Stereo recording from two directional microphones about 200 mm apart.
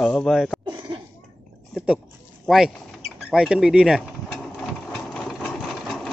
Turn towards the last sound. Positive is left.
turn(degrees=0)  # may be behind; listen again after turning